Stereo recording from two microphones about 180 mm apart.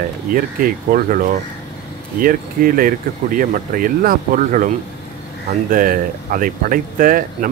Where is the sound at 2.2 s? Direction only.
50° right (ahead or behind).